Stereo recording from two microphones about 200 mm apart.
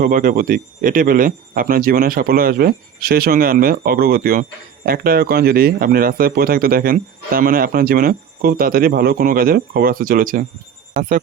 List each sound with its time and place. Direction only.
0.0 s speech: 45° right (ahead or behind)